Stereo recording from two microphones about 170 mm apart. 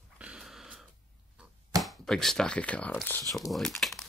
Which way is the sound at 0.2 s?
5° right (ahead or behind).